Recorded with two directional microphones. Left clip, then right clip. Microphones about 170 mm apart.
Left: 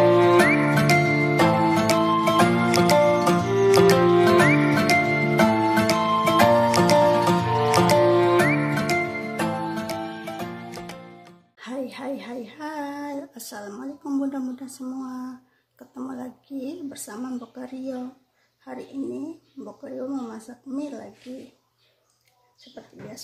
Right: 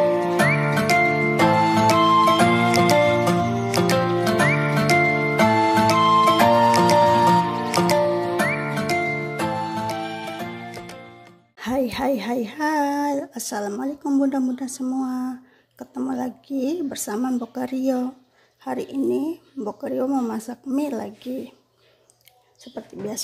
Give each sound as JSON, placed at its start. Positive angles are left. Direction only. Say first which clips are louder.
{"t": 0.0, "sound": "music", "louder": "left 3 dB", "side_deg": 0}
{"t": 11.6, "sound": "a sound", "louder": "right 9 dB", "side_deg": -40}
{"t": 15.0, "sound": "speech", "louder": "right 7 dB", "side_deg": -40}